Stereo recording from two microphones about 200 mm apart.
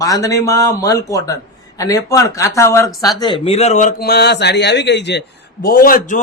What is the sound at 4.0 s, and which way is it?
A man's voice, 50° left (ahead or behind).